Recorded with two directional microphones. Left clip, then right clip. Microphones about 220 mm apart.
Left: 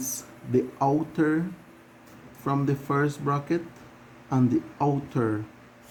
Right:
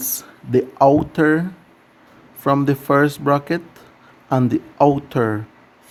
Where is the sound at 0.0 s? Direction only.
50° right (ahead or behind).